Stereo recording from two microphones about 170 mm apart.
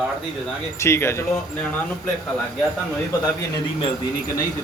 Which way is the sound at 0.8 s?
15° left (ahead or behind).